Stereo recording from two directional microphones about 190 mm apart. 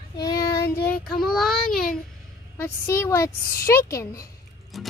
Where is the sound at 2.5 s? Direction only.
15° left (ahead or behind).